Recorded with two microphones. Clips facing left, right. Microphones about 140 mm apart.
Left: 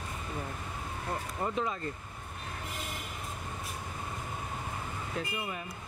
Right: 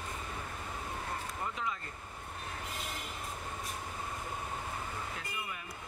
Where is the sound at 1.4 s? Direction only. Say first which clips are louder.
Left 7 dB; 35° left (ahead or behind).